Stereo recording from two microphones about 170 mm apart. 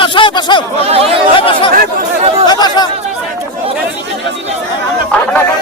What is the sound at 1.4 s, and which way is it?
Speech, 30° left (ahead or behind).